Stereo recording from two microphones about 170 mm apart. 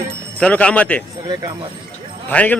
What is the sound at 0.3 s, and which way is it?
Speech, 5° left (ahead or behind).